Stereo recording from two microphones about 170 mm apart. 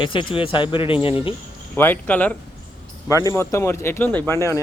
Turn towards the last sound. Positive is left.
turn(degrees=15)  # may be behind; listen again after turning